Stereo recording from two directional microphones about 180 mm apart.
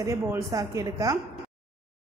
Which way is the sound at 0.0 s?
15° right (ahead or behind).